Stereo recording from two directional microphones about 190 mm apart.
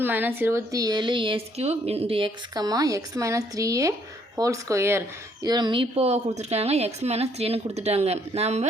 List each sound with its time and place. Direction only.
0.0 s speech: 10° right (ahead or behind); by 8.6 s 35° right (ahead or behind)